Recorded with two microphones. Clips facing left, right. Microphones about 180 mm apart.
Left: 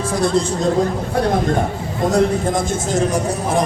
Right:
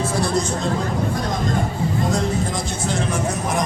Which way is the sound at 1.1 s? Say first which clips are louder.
Left 7 dB; 65° left (ahead or behind).